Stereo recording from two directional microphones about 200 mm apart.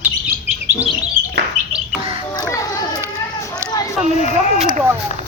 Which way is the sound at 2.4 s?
15° left (ahead or behind).